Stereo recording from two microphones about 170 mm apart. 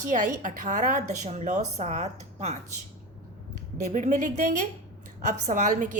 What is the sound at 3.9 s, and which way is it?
A woman's voice, 50° right (ahead or behind).